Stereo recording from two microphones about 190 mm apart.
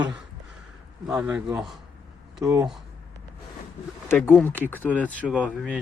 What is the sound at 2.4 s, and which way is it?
Speech, 15° right (ahead or behind).